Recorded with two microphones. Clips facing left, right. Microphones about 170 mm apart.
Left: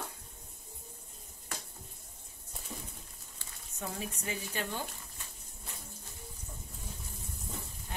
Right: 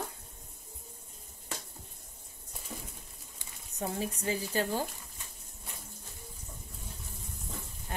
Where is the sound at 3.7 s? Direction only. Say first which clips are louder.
Right 5 dB; 30° right (ahead or behind).